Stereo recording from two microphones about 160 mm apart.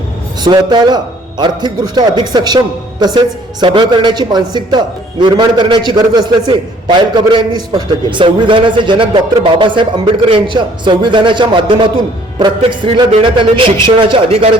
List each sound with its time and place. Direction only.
0.4 s a woman's voice: 25° right (ahead or behind)